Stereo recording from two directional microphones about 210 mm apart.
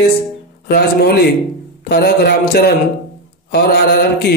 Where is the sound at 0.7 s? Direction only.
50° left (ahead or behind).